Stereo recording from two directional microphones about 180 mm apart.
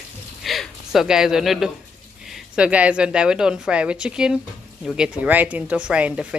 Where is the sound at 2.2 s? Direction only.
5° right (ahead or behind).